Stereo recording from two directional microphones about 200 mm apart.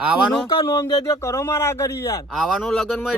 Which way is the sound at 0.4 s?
20° left (ahead or behind).